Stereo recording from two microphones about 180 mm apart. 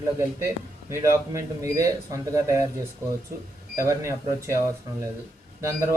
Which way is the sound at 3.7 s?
15° right (ahead or behind).